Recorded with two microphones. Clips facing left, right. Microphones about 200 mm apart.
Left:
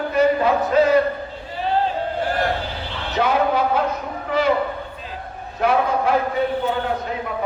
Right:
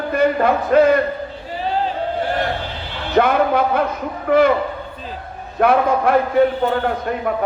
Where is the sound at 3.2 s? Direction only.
55° right (ahead or behind).